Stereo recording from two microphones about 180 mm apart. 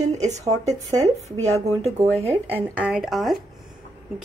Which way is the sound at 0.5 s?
20° right (ahead or behind).